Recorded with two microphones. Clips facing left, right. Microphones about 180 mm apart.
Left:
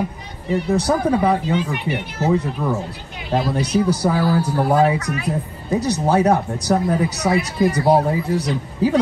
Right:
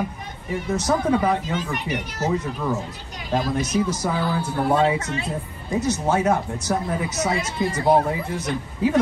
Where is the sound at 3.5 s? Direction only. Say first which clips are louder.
Left 4 dB; 35° left (ahead or behind).